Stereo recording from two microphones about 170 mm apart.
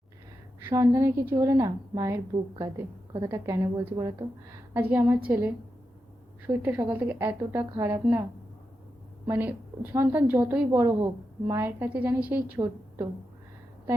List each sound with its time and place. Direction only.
0.6 s a woman's voice: 15° right (ahead or behind)
4.7 s a woman's voice: 10° right (ahead or behind)
6.5 s a woman's voice: 10° right (ahead or behind)
9.2 s a woman's voice: 10° right (ahead or behind)